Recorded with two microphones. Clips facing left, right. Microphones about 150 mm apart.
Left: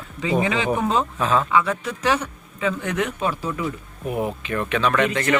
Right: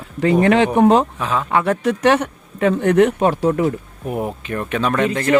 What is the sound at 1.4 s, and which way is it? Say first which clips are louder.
Speech: right 4 dB; 60° right (ahead or behind).